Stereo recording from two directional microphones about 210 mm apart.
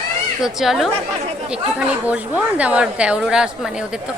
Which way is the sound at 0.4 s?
Centre (ahead or behind).